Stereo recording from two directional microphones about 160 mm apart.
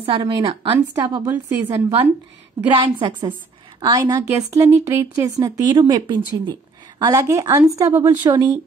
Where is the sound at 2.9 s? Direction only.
30° right (ahead or behind).